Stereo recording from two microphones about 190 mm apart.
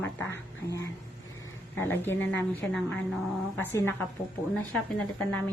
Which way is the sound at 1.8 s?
10° left (ahead or behind).